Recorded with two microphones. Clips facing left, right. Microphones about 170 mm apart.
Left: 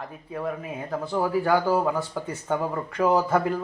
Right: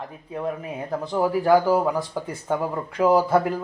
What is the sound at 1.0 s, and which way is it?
Speech, 15° right (ahead or behind).